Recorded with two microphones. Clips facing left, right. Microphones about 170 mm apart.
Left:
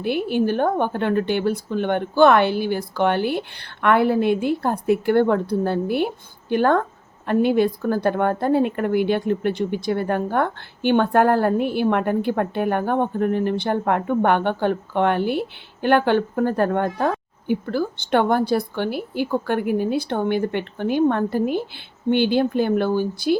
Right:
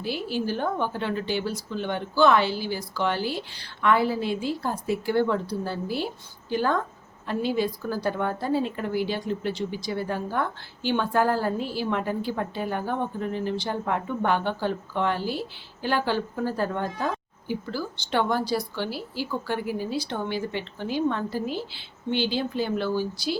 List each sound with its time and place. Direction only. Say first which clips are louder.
0.0 s a woman's voice: left 8 dB; 60° left (ahead or behind)